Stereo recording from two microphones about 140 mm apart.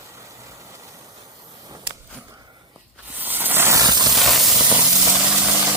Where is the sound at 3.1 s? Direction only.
15° right (ahead or behind); by 4.1 s 30° right (ahead or behind).